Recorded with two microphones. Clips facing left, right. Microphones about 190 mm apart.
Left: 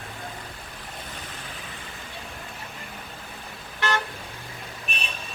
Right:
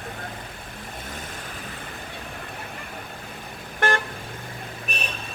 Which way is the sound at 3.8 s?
50° right (ahead or behind).